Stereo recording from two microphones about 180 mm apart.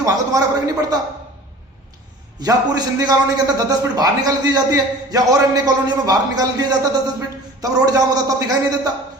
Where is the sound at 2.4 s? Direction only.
20° right (ahead or behind).